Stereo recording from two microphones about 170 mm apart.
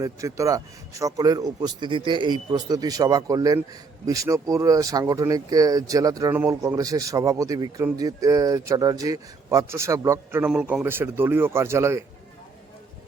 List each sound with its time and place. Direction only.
0.0 s speech: 20° right (ahead or behind)